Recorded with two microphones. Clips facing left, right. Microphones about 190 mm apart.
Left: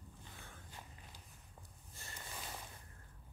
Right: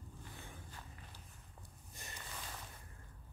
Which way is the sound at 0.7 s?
15° left (ahead or behind).